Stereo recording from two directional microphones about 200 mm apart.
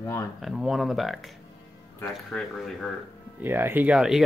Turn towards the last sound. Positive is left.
turn(degrees=-5)  # may be behind; listen again after turning